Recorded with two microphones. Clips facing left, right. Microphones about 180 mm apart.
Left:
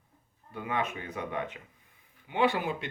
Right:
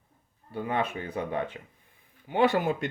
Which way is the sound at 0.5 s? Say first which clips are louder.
Right 3 dB; 30° right (ahead or behind).